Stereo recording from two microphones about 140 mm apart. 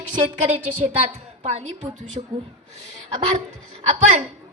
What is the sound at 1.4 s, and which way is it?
Speech, 45° right (ahead or behind).